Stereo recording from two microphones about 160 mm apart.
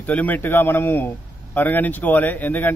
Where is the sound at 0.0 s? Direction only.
10° left (ahead or behind).